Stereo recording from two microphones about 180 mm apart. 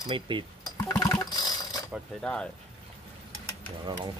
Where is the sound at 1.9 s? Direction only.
5° left (ahead or behind).